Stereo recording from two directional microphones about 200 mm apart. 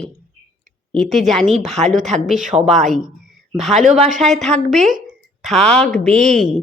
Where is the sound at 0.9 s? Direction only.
Centre (ahead or behind).